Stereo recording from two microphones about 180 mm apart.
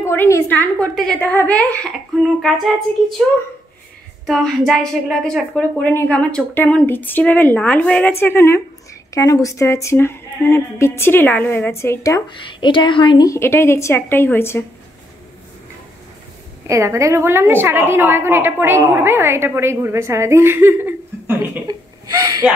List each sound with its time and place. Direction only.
0.0 s a woman's voice: 15° left (ahead or behind)
4.3 s a woman's voice: centre (ahead or behind)
16.6 s a woman's voice: 15° right (ahead or behind)
21.6 s a sound: 20° right (ahead or behind)